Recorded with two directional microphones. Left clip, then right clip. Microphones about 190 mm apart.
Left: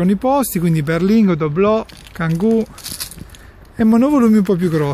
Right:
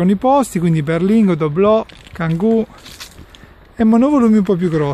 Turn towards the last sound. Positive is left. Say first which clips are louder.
# right 1 dB
turn(degrees=-10)  # may be behind; listen again after turning